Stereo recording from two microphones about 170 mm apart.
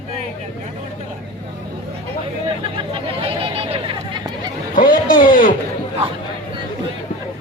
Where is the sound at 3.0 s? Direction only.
35° right (ahead or behind).